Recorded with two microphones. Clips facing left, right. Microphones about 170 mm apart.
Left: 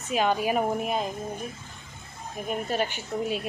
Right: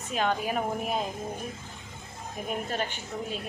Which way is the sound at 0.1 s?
10° left (ahead or behind).